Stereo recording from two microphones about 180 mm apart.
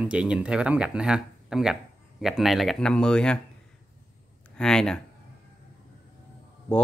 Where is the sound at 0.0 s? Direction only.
5° right (ahead or behind).